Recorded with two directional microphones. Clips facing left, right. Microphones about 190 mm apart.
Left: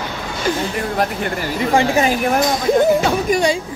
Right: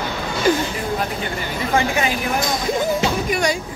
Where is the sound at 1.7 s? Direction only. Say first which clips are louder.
Left 4 dB; 30° left (ahead or behind).